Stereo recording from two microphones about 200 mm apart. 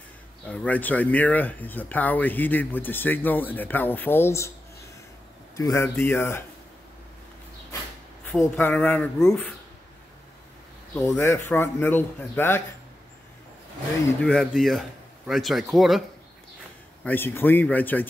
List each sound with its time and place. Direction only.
0.5 s speech: 10° left (ahead or behind)
5.6 s speech: 15° left (ahead or behind)
8.3 s speech: 10° left (ahead or behind)
11.1 s speech: 10° left (ahead or behind)
14.2 s a man's voice: centre (ahead or behind)
17.0 s speech: 10° left (ahead or behind)